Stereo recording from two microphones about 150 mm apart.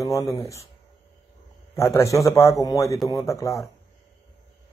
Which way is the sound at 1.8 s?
20° left (ahead or behind).